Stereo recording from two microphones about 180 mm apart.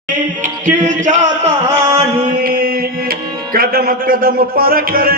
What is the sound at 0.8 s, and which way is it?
Music, 45° right (ahead or behind).